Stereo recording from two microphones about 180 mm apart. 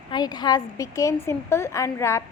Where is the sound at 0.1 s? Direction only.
25° left (ahead or behind).